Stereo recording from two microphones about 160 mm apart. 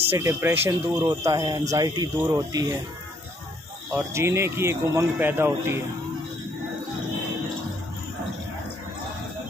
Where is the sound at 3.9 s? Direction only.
15° right (ahead or behind).